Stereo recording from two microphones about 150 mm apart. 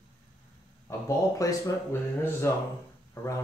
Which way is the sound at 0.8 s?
20° left (ahead or behind).